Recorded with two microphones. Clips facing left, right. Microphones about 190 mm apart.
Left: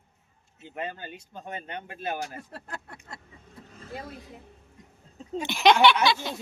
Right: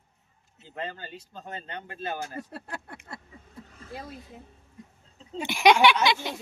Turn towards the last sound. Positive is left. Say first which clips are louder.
# left 1 dB
turn(degrees=-15)  # may be behind; listen again after turning